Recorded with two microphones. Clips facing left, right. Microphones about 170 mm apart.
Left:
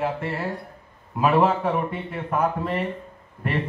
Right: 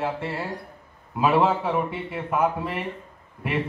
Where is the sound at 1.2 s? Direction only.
5° right (ahead or behind).